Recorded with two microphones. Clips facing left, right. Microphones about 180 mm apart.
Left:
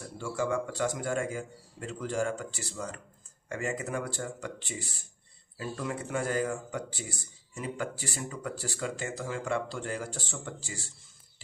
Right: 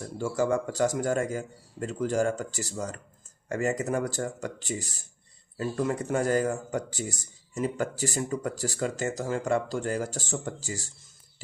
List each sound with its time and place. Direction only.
0.2 s speech: 45° right (ahead or behind)